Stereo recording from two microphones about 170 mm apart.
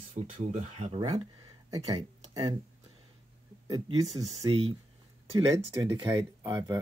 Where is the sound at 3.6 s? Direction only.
20° right (ahead or behind).